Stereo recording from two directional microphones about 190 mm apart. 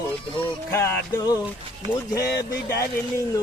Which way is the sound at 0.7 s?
15° left (ahead or behind).